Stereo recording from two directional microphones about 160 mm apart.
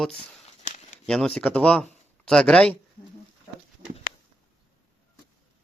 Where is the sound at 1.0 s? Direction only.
5° left (ahead or behind).